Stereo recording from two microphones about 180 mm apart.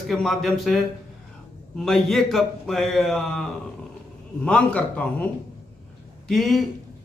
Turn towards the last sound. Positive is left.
turn(degrees=0)  # may be behind; listen again after turning